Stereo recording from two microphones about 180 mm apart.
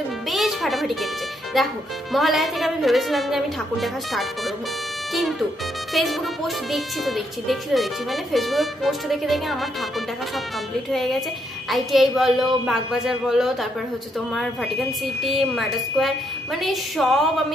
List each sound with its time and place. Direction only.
0.3 s music: centre (ahead or behind)
1.5 s speech: centre (ahead or behind)
10.9 s speech: centre (ahead or behind)